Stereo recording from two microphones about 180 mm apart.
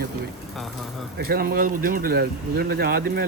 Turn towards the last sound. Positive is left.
turn(degrees=-55)  # may be behind; listen again after turning